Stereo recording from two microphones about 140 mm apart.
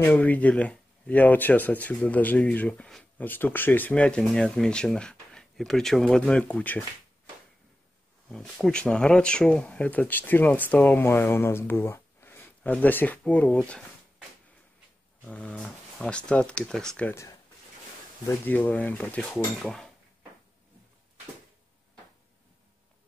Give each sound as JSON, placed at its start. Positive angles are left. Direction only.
{"t": 0.0, "sound": "speech", "side_deg": 10}
{"t": 8.3, "sound": "speech", "side_deg": 5}
{"t": 15.2, "sound": "speech", "side_deg": 10}
{"t": 17.1, "sound": "speech", "side_deg": 20}